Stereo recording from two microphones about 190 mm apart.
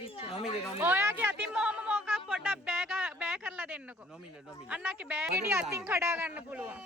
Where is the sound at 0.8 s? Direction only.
10° right (ahead or behind).